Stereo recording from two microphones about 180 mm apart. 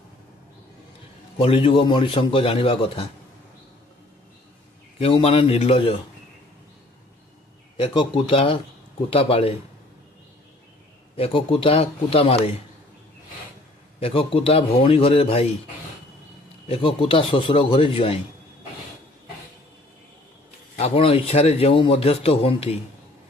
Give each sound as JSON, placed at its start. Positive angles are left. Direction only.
{"t": 1.4, "sound": "speech", "side_deg": 30}
{"t": 4.9, "sound": "speech", "side_deg": 35}
{"t": 7.7, "sound": "speech", "side_deg": 30}
{"t": 11.1, "sound": "speech", "side_deg": 30}
{"t": 13.9, "sound": "speech", "side_deg": 30}
{"t": 16.6, "sound": "speech", "side_deg": 30}
{"t": 20.7, "sound": "speech", "side_deg": 35}